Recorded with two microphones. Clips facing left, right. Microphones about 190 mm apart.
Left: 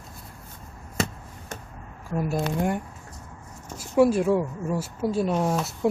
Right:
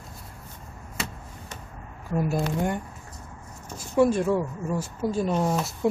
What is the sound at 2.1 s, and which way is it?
Speech, centre (ahead or behind).